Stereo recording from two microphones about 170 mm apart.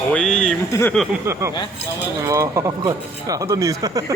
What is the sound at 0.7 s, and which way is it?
Speech, 15° left (ahead or behind).